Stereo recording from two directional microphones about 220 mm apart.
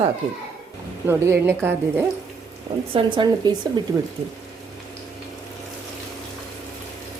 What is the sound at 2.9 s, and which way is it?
Speech, 20° right (ahead or behind).